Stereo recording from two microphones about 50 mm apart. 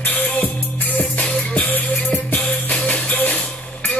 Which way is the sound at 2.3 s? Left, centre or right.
Left.